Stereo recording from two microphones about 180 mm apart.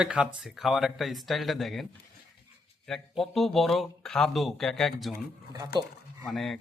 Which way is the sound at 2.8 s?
Centre (ahead or behind).